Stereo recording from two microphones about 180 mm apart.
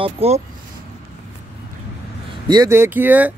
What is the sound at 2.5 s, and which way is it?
Speech, 15° right (ahead or behind).